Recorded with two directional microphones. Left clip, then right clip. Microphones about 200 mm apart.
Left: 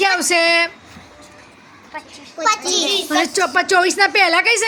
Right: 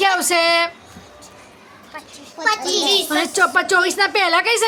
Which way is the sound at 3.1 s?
5° left (ahead or behind).